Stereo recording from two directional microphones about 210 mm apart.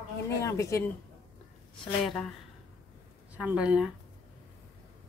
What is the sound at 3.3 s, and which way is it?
Speech, 5° right (ahead or behind).